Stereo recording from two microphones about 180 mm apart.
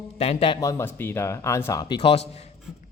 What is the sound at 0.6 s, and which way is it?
Speech, 15° left (ahead or behind).